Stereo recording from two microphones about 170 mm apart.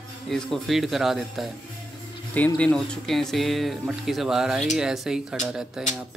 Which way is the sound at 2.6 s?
5° left (ahead or behind).